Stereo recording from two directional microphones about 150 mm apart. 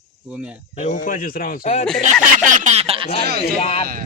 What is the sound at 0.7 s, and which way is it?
Speech, 55° left (ahead or behind).